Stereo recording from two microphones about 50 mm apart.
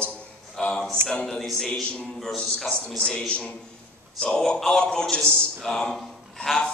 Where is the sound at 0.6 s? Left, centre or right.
Centre.